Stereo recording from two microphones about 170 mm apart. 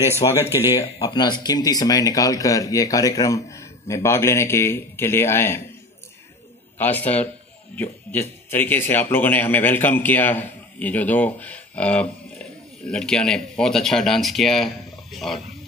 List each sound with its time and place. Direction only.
0.5 s speech: 20° left (ahead or behind)
6.8 s a man's voice: 10° left (ahead or behind)